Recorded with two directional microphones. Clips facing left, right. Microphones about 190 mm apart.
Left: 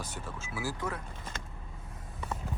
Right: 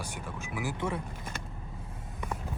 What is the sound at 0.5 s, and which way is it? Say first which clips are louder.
Speech: right 2 dB; 20° right (ahead or behind).